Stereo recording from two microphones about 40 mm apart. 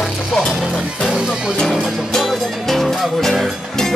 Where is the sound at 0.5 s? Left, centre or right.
Centre.